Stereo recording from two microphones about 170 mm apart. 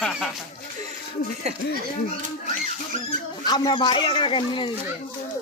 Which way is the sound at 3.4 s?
25° left (ahead or behind).